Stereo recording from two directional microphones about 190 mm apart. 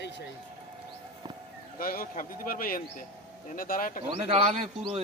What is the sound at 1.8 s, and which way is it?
Speech, 50° left (ahead or behind).